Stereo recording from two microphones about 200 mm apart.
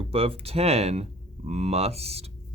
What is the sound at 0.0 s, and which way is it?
Speech, 30° right (ahead or behind).